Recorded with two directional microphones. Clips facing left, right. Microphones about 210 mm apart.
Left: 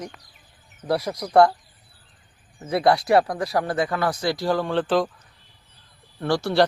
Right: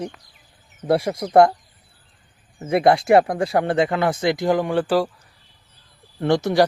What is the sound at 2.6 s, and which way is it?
Speech, 25° right (ahead or behind).